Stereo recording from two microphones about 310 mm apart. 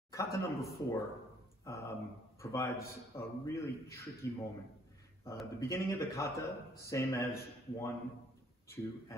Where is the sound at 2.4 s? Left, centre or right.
Centre.